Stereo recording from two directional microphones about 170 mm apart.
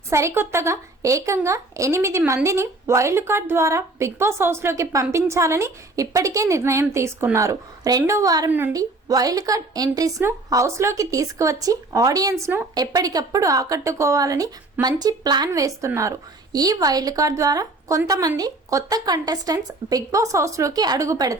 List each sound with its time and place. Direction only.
0.1 s a woman's voice: 15° right (ahead or behind)